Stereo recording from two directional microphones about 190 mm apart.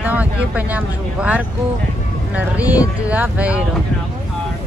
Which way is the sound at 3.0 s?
5° right (ahead or behind).